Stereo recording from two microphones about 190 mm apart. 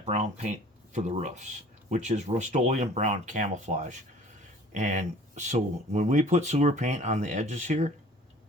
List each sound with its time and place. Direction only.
0.0 s speech: 35° right (ahead or behind)